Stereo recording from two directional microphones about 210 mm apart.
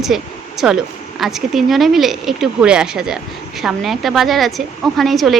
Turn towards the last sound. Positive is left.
turn(degrees=0)  # may be behind; listen again after turning